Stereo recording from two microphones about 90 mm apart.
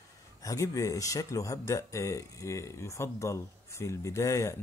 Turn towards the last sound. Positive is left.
turn(degrees=35)  # may be behind; listen again after turning